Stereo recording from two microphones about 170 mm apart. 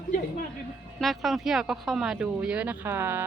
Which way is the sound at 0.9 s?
Centre (ahead or behind).